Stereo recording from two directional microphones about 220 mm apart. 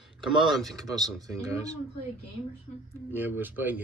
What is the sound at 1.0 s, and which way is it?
Speech, 15° right (ahead or behind).